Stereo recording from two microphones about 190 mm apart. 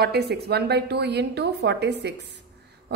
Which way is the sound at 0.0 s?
55° right (ahead or behind).